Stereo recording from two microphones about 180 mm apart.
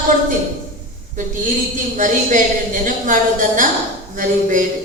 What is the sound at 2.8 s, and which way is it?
A woman's voice, 45° right (ahead or behind).